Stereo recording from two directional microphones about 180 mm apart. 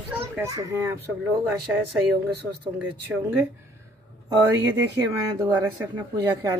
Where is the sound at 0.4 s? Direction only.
15° right (ahead or behind).